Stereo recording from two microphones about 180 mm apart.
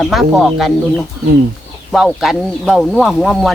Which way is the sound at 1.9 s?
Centre (ahead or behind).